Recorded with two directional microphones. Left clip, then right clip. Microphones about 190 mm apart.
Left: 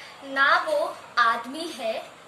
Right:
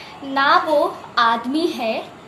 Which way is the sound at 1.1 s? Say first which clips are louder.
Right 3 dB; 20° left (ahead or behind).